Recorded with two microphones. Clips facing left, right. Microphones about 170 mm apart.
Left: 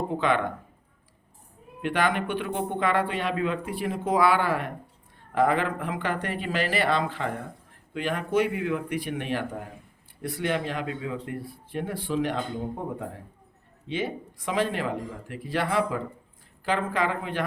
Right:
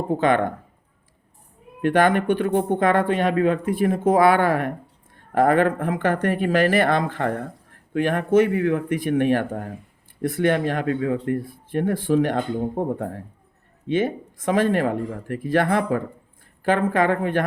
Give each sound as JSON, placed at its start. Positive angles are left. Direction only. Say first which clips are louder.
{"t": 0.1, "sound": "speech", "louder": "right 8 dB", "side_deg": -45}
{"t": 1.8, "sound": "speech", "louder": "right 7 dB", "side_deg": -45}